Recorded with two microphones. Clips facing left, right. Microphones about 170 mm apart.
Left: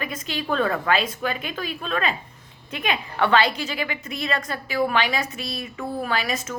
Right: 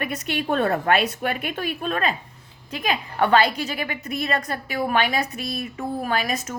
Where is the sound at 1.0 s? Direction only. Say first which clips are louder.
Right 2 dB; 60° right (ahead or behind).